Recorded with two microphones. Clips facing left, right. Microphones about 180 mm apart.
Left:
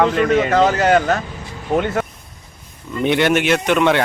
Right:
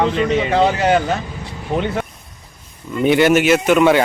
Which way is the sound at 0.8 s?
5° right (ahead or behind).